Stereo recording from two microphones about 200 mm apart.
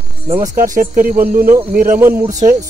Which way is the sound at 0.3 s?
40° right (ahead or behind).